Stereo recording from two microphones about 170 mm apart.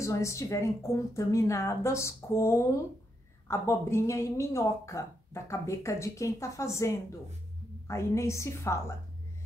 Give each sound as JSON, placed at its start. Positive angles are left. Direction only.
{"t": 0.0, "sound": "a woman's voice", "side_deg": 15}